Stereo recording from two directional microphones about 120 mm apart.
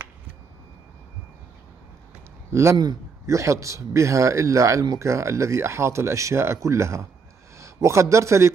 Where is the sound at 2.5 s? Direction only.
25° right (ahead or behind).